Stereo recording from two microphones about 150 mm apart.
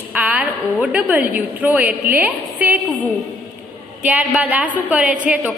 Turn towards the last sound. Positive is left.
turn(degrees=-10)  # may be behind; listen again after turning